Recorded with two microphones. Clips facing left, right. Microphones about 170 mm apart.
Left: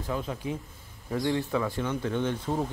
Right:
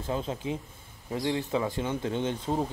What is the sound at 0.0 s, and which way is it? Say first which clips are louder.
Speech: right 1 dB; 25° right (ahead or behind).